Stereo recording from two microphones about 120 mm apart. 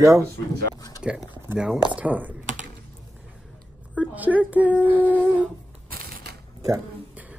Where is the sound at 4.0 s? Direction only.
15° right (ahead or behind).